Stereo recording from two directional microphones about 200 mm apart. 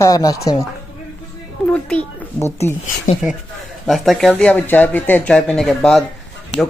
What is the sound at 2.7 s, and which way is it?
Speech, 10° left (ahead or behind).